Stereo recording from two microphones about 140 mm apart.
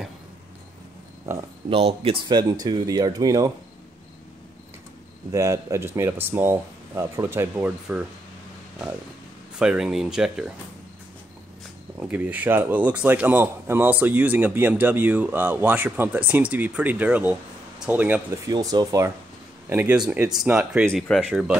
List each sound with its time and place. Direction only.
1.7 s speech: 45° right (ahead or behind); by 3.5 s 25° right (ahead or behind)
5.3 s speech: 20° right (ahead or behind)
9.6 s speech: 5° right (ahead or behind)
12.0 s speech: 10° right (ahead or behind)
18.5 s speech: 30° right (ahead or behind)
19.7 s speech: 10° right (ahead or behind)
20.9 s speech: 5° left (ahead or behind)